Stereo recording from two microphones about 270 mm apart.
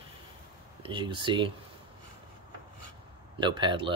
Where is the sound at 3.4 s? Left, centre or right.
Centre.